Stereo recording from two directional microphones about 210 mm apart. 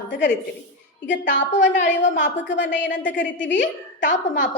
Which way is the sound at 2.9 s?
40° left (ahead or behind).